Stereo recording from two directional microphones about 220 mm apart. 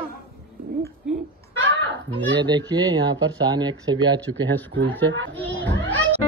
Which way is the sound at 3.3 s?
20° right (ahead or behind).